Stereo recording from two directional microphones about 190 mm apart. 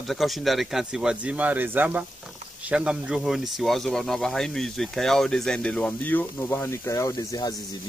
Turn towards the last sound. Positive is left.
turn(degrees=20)  # may be behind; listen again after turning